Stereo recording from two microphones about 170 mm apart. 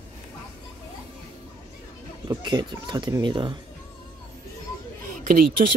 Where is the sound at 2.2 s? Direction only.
25° right (ahead or behind).